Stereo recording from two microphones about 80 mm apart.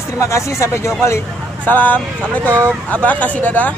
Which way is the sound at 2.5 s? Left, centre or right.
Right.